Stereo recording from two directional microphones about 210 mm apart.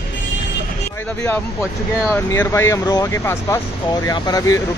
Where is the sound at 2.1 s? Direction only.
15° left (ahead or behind).